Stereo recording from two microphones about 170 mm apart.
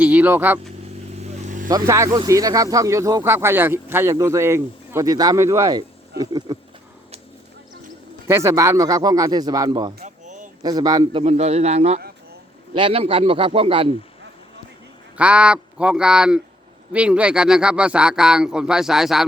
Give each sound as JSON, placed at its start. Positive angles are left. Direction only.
{"t": 0.0, "sound": "vehicle", "side_deg": -10}
{"t": 1.2, "sound": "vehicle", "side_deg": -45}
{"t": 1.9, "sound": "speech", "side_deg": -20}
{"t": 8.3, "sound": "speech", "side_deg": -15}
{"t": 10.0, "sound": "a sound", "side_deg": -45}
{"t": 10.6, "sound": "speech", "side_deg": -25}
{"t": 11.2, "sound": "speech", "side_deg": -40}
{"t": 15.2, "sound": "speech", "side_deg": -5}